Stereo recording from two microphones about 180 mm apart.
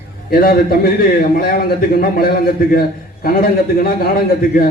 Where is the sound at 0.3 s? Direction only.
55° left (ahead or behind).